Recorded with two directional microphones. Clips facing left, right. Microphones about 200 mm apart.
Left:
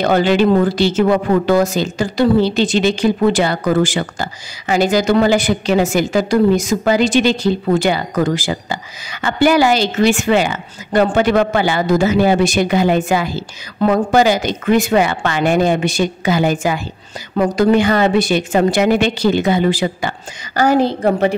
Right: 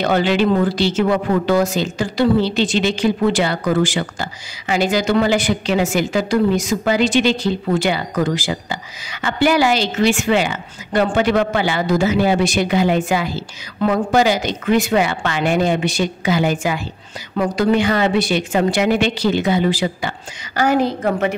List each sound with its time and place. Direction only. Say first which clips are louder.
0.0 s a woman's voice: left 3 dB; 45° left (ahead or behind)
20.6 s a woman's voice: left 3 dB; 35° left (ahead or behind)